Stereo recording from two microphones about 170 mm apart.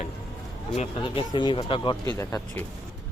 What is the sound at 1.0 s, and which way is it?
Speech, 30° left (ahead or behind).